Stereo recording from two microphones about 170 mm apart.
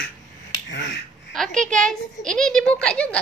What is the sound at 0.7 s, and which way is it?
Finger snapping, 90° left.